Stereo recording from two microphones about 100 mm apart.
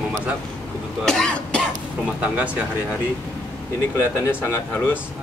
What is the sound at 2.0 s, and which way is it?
Speech, 10° right (ahead or behind).